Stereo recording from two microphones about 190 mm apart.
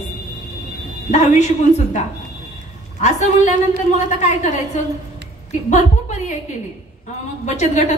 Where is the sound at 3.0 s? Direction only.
40° left (ahead or behind).